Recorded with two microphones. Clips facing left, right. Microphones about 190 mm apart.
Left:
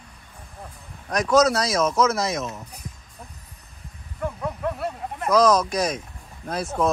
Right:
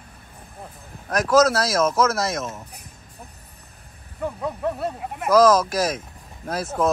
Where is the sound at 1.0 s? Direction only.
Centre (ahead or behind).